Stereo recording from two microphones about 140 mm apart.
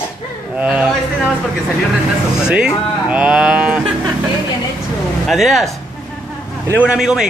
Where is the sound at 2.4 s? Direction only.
5° right (ahead or behind).